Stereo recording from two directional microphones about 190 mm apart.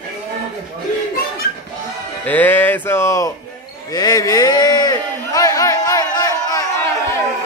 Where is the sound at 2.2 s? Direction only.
10° left (ahead or behind).